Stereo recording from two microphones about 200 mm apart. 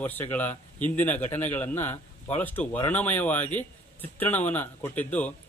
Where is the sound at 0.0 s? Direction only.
10° left (ahead or behind).